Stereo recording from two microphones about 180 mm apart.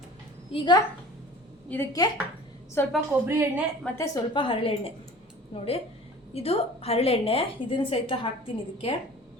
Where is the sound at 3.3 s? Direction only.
10° right (ahead or behind).